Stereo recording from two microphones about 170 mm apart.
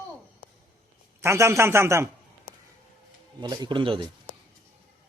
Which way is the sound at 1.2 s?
15° right (ahead or behind).